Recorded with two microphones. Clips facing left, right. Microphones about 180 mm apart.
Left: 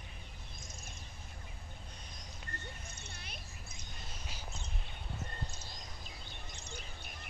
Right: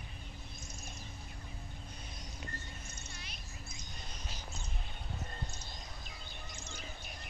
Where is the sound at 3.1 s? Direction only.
55° left (ahead or behind).